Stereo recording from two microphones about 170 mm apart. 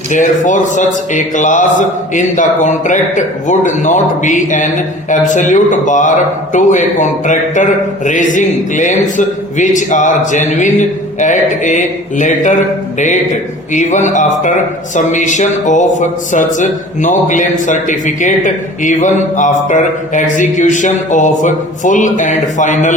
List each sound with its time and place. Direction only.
0.1 s a man's voice: 50° left (ahead or behind)